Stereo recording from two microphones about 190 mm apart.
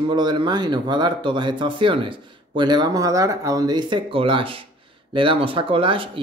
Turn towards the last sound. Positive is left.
turn(degrees=-25)  # may be behind; listen again after turning